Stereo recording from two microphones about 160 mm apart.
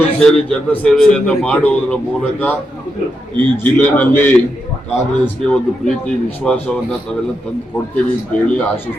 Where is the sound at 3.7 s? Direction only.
10° left (ahead or behind).